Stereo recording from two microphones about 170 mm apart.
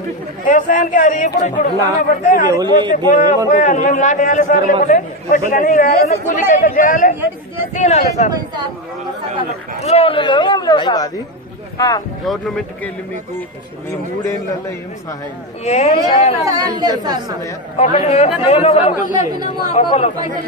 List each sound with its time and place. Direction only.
0.5 s speech: 50° left (ahead or behind)
2.5 s speech: 25° right (ahead or behind)
3.5 s speech: 45° left (ahead or behind)
9.8 s a man's voice: 35° left (ahead or behind)
12.3 s speech: centre (ahead or behind)
14.2 s a man's voice: 20° left (ahead or behind)
15.6 s speech: 40° left (ahead or behind)
16.4 s speech: 25° right (ahead or behind)
17.7 s speech: 45° left (ahead or behind)
18.9 s speech: 50° left (ahead or behind)
19.7 s speech: 40° left (ahead or behind)